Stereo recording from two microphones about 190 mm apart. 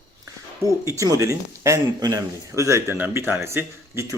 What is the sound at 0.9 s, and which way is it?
Speech, 15° right (ahead or behind).